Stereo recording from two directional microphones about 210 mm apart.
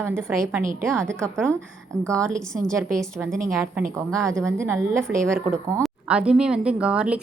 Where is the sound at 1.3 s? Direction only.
5° left (ahead or behind).